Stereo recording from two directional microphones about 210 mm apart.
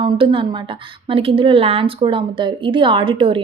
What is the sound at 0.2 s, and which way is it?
A woman's voice, 25° right (ahead or behind).